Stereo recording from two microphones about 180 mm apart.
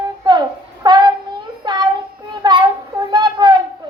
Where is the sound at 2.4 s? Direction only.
25° right (ahead or behind).